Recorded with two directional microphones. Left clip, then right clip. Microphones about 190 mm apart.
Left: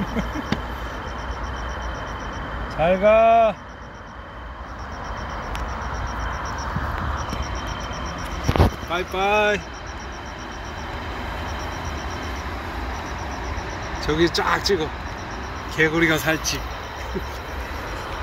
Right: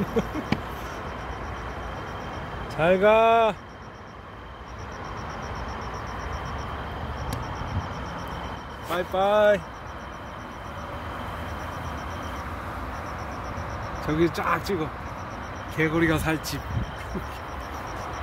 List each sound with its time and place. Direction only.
2.8 s speech: 40° right (ahead or behind)
8.9 s speech: 55° right (ahead or behind)
14.0 s speech: 50° right (ahead or behind)